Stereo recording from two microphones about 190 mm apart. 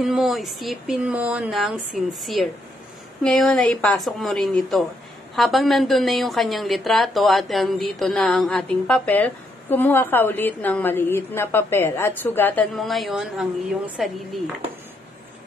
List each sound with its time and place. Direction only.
0.0 s a woman's voice: centre (ahead or behind)